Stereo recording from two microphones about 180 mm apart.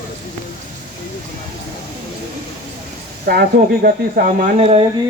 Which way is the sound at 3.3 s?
55° right (ahead or behind).